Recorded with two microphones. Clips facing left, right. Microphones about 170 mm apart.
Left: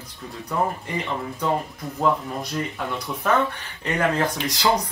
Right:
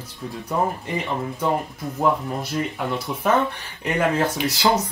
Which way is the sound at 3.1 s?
15° right (ahead or behind).